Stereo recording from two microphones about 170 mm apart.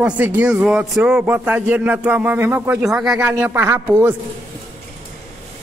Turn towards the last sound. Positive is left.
turn(degrees=-15)  # may be behind; listen again after turning